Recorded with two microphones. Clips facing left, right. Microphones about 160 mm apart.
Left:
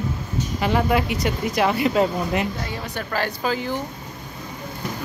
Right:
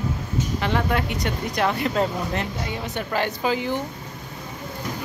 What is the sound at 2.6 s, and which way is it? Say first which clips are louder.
Speech: right 1 dB; 20° right (ahead or behind).